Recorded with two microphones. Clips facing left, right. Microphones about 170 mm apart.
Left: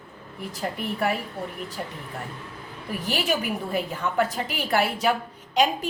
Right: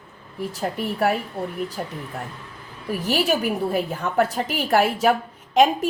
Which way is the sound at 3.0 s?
40° right (ahead or behind).